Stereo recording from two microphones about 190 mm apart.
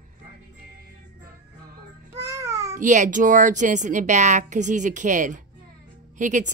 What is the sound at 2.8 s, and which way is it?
Speech, 40° right (ahead or behind).